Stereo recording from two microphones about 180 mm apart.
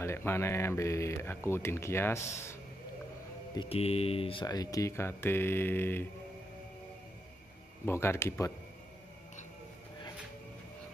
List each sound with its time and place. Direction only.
0.0 s speech: 15° left (ahead or behind)
3.5 s speech: 30° left (ahead or behind); by 6.0 s 10° left (ahead or behind)
7.8 s speech: 15° left (ahead or behind)